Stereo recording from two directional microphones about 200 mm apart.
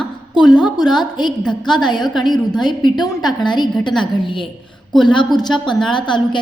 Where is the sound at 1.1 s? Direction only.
20° left (ahead or behind).